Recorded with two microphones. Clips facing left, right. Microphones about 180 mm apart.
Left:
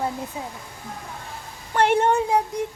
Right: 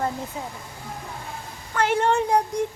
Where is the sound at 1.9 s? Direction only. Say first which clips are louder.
Even; 20° left (ahead or behind).